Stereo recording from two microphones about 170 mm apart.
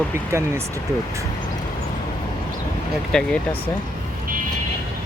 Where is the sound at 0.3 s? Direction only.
15° right (ahead or behind).